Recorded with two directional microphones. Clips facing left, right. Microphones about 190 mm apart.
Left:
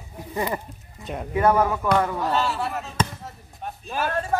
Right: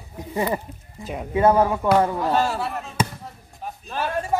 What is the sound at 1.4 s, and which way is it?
Speech, 20° right (ahead or behind).